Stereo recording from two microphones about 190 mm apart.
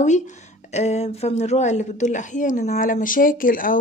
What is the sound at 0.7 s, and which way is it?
A woman's voice, 35° left (ahead or behind).